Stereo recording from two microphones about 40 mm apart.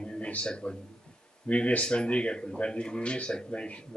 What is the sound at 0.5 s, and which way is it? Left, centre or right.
Speech, left.